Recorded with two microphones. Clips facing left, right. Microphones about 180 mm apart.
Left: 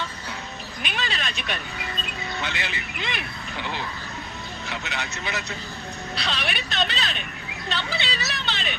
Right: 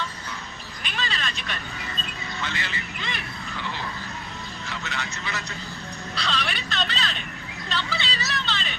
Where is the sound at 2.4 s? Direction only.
65° left (ahead or behind).